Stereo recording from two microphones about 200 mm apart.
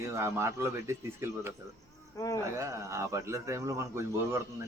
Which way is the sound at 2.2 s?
15° left (ahead or behind).